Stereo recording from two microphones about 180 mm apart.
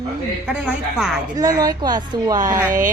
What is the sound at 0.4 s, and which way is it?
Speech, 5° right (ahead or behind).